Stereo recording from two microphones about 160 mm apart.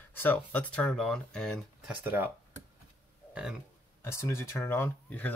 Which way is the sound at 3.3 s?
5° right (ahead or behind).